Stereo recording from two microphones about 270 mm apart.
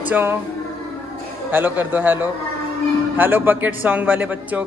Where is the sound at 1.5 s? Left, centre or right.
Centre.